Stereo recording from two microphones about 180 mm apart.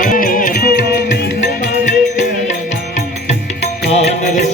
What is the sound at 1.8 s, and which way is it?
Music, 45° left (ahead or behind).